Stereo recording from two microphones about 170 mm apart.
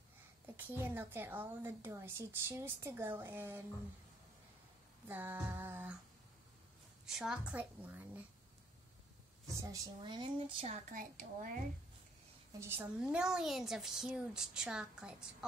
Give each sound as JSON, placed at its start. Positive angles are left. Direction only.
{"t": 0.6, "sound": "a woman's voice", "side_deg": -10}
{"t": 5.0, "sound": "a woman's voice", "side_deg": -10}
{"t": 7.1, "sound": "a woman's voice", "side_deg": 0}
{"t": 9.6, "sound": "speech", "side_deg": -25}
{"t": 10.9, "sound": "a woman's voice", "side_deg": -50}
{"t": 12.5, "sound": "a woman's voice", "side_deg": -15}